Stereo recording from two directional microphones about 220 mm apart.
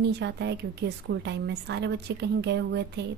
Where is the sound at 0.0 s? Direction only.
50° right (ahead or behind).